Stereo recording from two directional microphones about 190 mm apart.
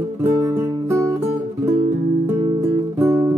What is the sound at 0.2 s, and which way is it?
Music, 15° right (ahead or behind).